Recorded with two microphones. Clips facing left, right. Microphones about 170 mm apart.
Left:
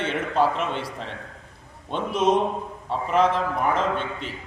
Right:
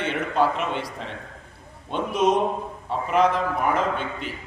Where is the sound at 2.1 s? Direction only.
30° left (ahead or behind).